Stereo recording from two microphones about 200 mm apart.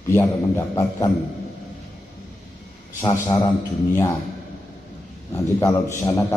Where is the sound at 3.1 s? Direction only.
20° left (ahead or behind).